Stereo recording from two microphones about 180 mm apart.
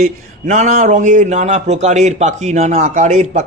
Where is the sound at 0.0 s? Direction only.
40° right (ahead or behind).